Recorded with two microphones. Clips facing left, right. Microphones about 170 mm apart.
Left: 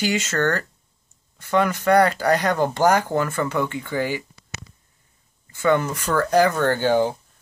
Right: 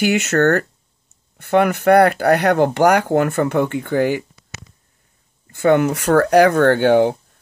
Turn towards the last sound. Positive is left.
turn(degrees=-60)  # may be behind; listen again after turning